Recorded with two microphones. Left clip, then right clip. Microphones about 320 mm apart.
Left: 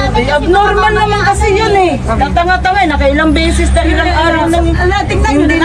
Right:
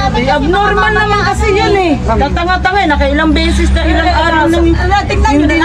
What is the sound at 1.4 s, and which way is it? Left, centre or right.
Speech, centre.